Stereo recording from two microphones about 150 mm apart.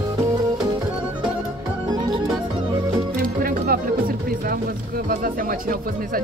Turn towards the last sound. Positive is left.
turn(degrees=-75)  # may be behind; listen again after turning